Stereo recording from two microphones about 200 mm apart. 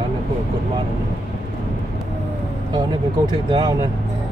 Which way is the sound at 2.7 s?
20° right (ahead or behind).